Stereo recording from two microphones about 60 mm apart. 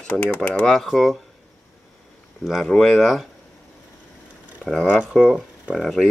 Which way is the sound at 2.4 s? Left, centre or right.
Centre.